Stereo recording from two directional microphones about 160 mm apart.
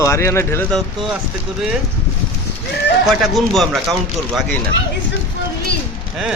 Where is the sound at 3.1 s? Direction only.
Centre (ahead or behind).